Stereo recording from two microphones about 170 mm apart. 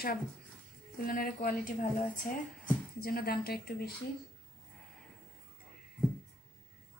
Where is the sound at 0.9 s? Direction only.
55° left (ahead or behind).